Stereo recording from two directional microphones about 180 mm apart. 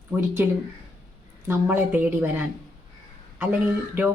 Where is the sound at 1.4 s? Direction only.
10° right (ahead or behind).